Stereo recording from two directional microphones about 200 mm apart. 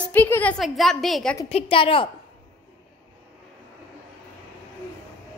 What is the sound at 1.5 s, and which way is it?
Speech, 25° left (ahead or behind).